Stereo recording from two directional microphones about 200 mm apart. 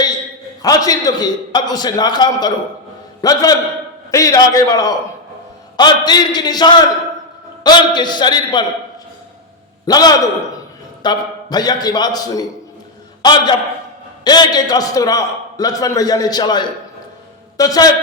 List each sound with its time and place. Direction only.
0.6 s a man's voice: 20° left (ahead or behind)
9.8 s a man's voice: 20° left (ahead or behind)